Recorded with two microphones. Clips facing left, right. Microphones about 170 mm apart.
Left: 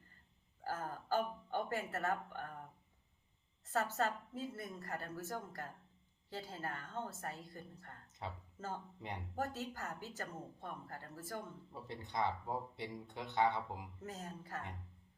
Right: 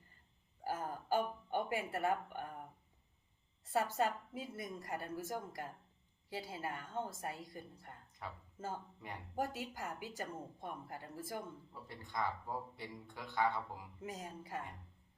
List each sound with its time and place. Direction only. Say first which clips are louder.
0.6 s music: right 2 dB; 15° right (ahead or behind)
3.7 s speech: right 2 dB; 10° right (ahead or behind)
8.2 s speech: left 2 dB; 25° left (ahead or behind)
8.5 s speech: right 1 dB; 10° right (ahead or behind)
11.7 s speech: left 6 dB; 20° left (ahead or behind)
14.0 s speech: right 1 dB; 10° right (ahead or behind)